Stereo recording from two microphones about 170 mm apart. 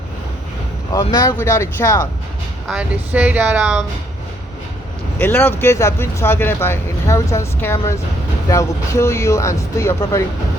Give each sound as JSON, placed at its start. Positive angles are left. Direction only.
{"t": 0.9, "sound": "speech", "side_deg": 20}
{"t": 2.6, "sound": "speech", "side_deg": -5}
{"t": 5.2, "sound": "speech", "side_deg": 10}